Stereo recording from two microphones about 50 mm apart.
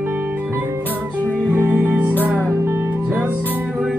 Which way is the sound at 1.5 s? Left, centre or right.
Right.